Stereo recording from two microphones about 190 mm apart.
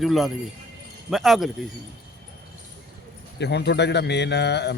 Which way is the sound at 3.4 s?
60° left (ahead or behind).